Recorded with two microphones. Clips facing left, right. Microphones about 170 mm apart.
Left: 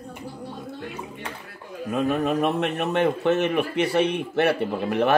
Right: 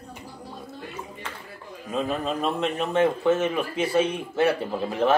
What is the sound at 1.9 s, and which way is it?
Speech, 65° left (ahead or behind).